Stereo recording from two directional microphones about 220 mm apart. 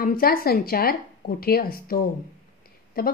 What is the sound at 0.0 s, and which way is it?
A woman's voice, 40° left (ahead or behind).